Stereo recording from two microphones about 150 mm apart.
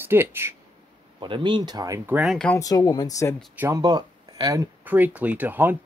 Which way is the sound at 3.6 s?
25° right (ahead or behind).